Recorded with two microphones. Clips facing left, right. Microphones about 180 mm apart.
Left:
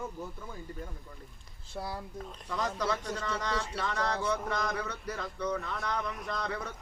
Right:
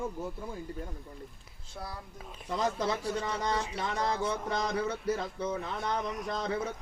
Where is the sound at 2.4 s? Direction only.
25° right (ahead or behind).